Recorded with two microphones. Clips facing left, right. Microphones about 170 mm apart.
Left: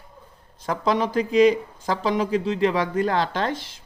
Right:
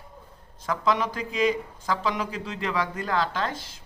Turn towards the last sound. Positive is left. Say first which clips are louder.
# left 4 dB
turn(degrees=25)  # may be behind; listen again after turning